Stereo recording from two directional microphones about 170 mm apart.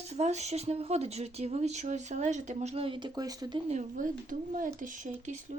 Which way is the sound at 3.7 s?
50° right (ahead or behind).